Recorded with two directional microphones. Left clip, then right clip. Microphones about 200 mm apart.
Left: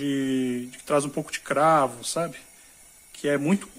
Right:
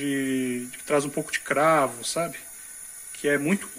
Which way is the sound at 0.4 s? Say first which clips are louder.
Left 1 dB; 20° left (ahead or behind).